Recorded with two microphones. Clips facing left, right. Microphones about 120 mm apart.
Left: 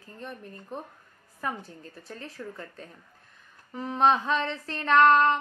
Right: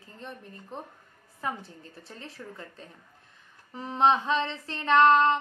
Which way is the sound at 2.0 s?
25° right (ahead or behind).